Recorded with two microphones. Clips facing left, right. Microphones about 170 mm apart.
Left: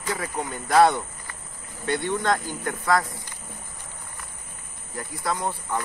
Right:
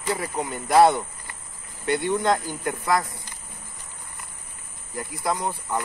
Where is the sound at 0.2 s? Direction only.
10° right (ahead or behind).